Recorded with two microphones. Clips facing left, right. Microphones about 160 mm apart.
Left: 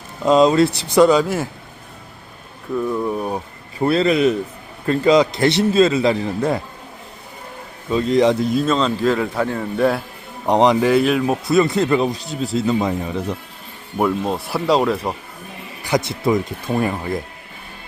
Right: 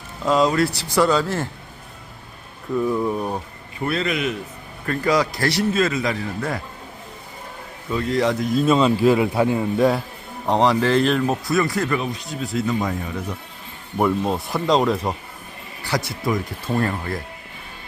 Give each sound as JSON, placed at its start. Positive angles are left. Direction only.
{"t": 0.3, "sound": "speech", "side_deg": 20}
{"t": 2.7, "sound": "speech", "side_deg": 0}
{"t": 3.8, "sound": "speech", "side_deg": 30}
{"t": 4.9, "sound": "speech", "side_deg": 20}
{"t": 7.9, "sound": "speech", "side_deg": 20}
{"t": 8.6, "sound": "a man's voice", "side_deg": -10}
{"t": 9.7, "sound": "speech", "side_deg": 0}
{"t": 10.4, "sound": "speech", "side_deg": 20}
{"t": 11.4, "sound": "speech", "side_deg": 25}
{"t": 14.0, "sound": "speech", "side_deg": 0}
{"t": 15.8, "sound": "speech", "side_deg": 20}